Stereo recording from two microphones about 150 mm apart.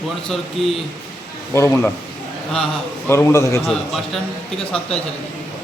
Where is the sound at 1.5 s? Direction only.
15° left (ahead or behind).